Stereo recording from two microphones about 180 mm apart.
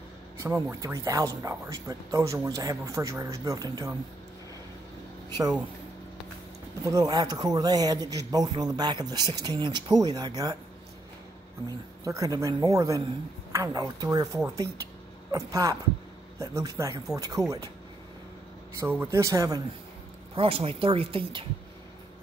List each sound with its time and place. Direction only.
0.4 s speech: 15° right (ahead or behind)
6.9 s speech: 20° right (ahead or behind)
12.0 s speech: 20° right (ahead or behind)
18.8 s speech: 15° right (ahead or behind)
20.3 s speech: 30° right (ahead or behind)